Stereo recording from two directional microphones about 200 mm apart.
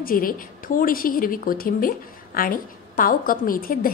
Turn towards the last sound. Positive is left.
turn(degrees=45)  # may be behind; listen again after turning